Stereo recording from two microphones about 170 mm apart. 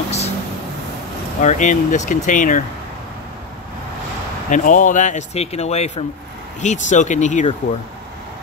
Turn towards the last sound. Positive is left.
turn(degrees=45)  # may be behind; listen again after turning